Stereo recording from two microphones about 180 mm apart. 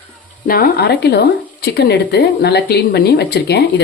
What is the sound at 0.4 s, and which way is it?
Speech, 55° left (ahead or behind).